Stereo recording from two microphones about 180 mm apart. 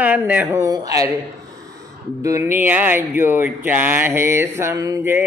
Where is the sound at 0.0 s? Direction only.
10° right (ahead or behind).